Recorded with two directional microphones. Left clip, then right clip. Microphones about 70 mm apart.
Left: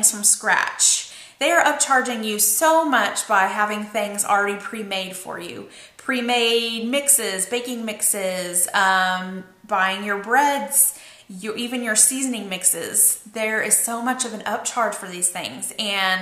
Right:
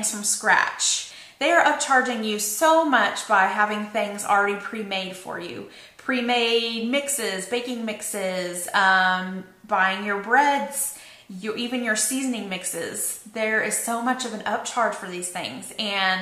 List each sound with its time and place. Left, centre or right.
0.0 s a woman's voice: left